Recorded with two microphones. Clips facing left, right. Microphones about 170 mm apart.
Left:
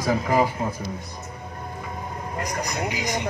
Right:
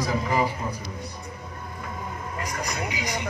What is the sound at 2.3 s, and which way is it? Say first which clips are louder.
Speech: left 3 dB; 45° left (ahead or behind).